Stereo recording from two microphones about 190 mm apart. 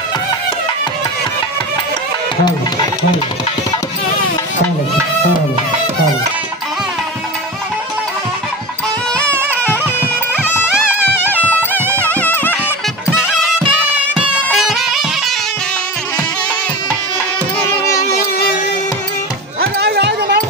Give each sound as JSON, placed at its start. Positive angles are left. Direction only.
{"t": 9.1, "sound": "music", "side_deg": 10}
{"t": 11.2, "sound": "music", "side_deg": 10}
{"t": 13.2, "sound": "music", "side_deg": -5}
{"t": 17.6, "sound": "music", "side_deg": 15}
{"t": 19.6, "sound": "a sound", "side_deg": -55}